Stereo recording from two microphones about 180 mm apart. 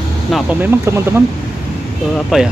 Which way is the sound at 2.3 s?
5° right (ahead or behind).